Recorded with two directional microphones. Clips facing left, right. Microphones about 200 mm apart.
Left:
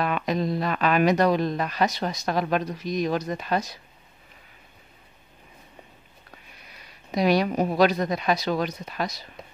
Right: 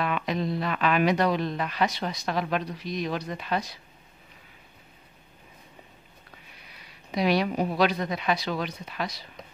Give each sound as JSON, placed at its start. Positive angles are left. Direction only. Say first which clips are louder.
{"t": 0.0, "sound": "speech", "louder": "left 3 dB", "side_deg": 40}
{"t": 7.1, "sound": "speech", "louder": "left 3 dB", "side_deg": 40}